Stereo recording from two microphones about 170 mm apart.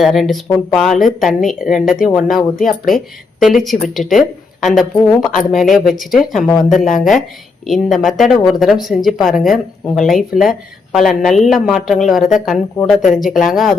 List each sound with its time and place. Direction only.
0.0 s speech: centre (ahead or behind)
2.6 s speech: 50° left (ahead or behind)
3.4 s speech: centre (ahead or behind)